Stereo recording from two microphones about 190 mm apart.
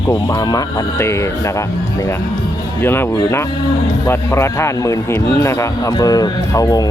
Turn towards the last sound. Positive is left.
turn(degrees=20)  # may be behind; listen again after turning